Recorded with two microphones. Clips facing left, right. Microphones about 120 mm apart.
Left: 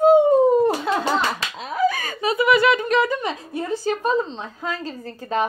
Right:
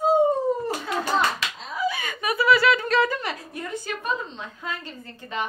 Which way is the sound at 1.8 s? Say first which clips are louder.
Left 6 dB; 40° left (ahead or behind).